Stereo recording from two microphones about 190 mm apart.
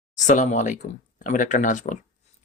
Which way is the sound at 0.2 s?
40° left (ahead or behind).